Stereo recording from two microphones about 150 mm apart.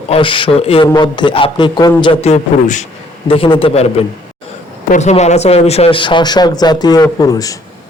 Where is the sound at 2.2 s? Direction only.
50° left (ahead or behind).